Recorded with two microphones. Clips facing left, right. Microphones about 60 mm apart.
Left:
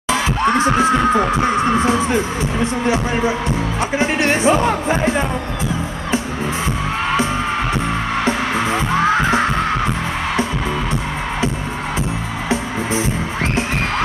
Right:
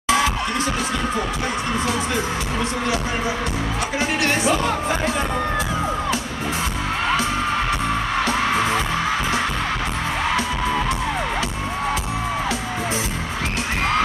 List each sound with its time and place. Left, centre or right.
0.7 s speech: left